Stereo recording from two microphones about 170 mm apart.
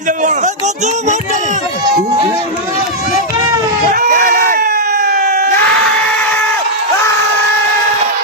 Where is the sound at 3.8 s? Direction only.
55° right (ahead or behind).